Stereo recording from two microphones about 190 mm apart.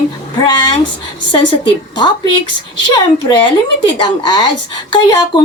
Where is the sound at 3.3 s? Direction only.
25° left (ahead or behind).